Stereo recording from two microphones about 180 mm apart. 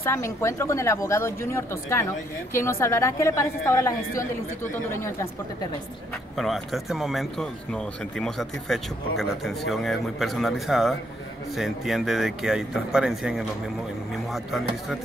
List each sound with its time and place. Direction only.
0.0 s speech: 15° left (ahead or behind)
6.3 s speech: centre (ahead or behind)